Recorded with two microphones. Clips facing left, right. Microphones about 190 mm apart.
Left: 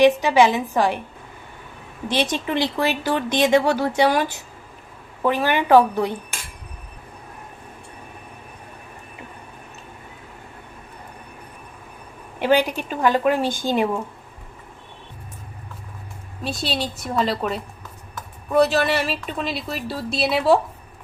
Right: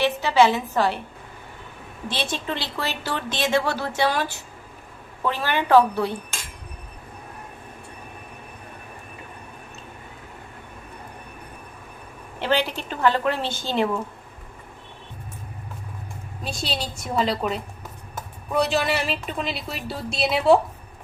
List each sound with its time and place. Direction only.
0.0 s a woman's voice: 15° left (ahead or behind)
2.3 s a woman's voice: 15° left (ahead or behind)
12.4 s a woman's voice: 15° left (ahead or behind)
16.4 s a woman's voice: centre (ahead or behind)